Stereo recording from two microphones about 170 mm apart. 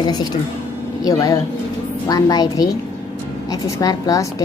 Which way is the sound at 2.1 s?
20° left (ahead or behind).